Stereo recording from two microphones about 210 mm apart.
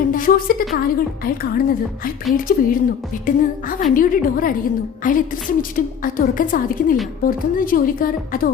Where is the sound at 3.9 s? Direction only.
40° left (ahead or behind).